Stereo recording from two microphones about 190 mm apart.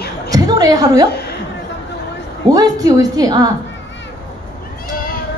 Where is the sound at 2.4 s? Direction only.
20° right (ahead or behind).